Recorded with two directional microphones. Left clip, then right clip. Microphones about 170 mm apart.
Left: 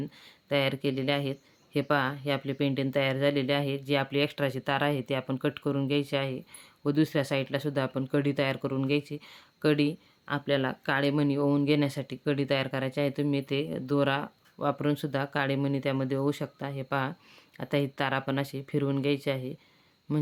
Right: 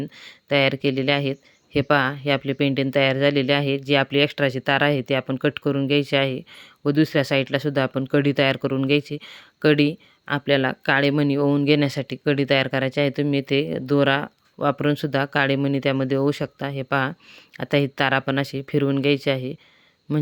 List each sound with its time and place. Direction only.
0.0 s speech: 30° right (ahead or behind)